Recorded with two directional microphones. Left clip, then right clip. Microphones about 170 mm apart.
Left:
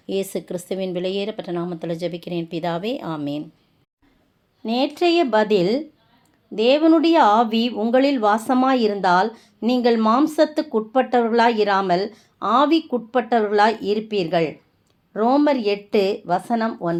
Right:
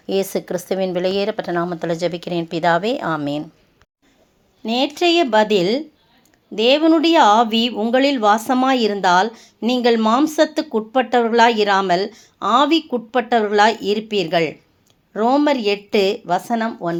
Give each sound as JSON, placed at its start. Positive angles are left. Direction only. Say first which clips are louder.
{"t": 0.0, "sound": "a woman's voice", "louder": "right 5 dB", "side_deg": 0}
{"t": 4.6, "sound": "speech", "louder": "right 2 dB", "side_deg": -30}